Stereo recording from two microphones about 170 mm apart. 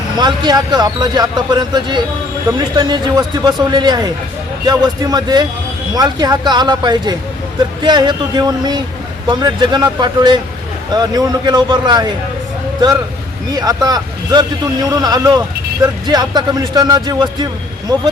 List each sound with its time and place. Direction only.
0.2 s speech: 25° right (ahead or behind)
13.5 s speech: 20° right (ahead or behind)